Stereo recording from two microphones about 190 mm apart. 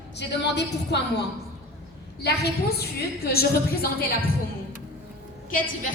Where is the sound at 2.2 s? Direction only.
60° left (ahead or behind).